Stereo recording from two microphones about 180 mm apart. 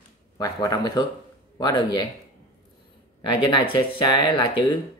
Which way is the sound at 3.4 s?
25° left (ahead or behind).